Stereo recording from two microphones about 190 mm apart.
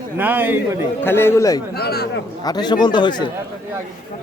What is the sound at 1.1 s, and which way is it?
Speech, 10° left (ahead or behind).